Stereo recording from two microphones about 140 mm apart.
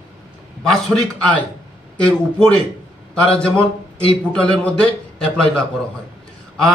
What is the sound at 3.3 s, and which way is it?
A man's voice, 5° left (ahead or behind).